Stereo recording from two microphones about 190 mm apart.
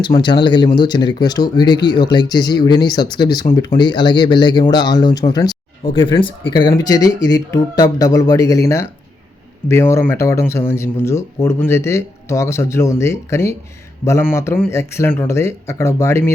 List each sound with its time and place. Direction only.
0.0 s speech: 25° left (ahead or behind)